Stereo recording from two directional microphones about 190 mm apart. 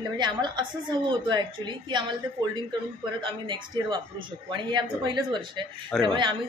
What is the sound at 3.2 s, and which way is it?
A woman's voice, 25° right (ahead or behind).